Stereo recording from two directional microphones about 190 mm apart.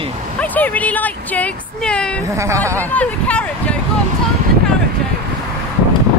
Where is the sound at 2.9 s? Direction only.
5° left (ahead or behind).